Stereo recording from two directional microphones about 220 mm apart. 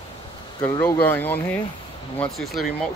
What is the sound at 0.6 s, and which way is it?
Speech, 10° left (ahead or behind).